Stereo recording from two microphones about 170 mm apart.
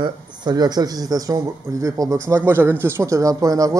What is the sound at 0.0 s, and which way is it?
Speech, 25° right (ahead or behind).